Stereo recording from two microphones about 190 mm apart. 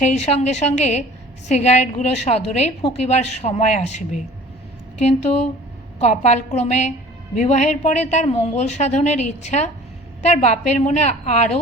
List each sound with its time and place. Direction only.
0.0 s a woman's voice: 35° left (ahead or behind)